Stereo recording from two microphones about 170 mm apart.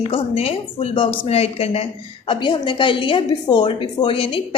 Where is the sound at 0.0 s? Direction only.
35° left (ahead or behind).